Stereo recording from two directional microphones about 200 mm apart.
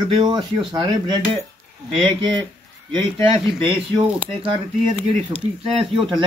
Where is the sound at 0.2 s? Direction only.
20° right (ahead or behind).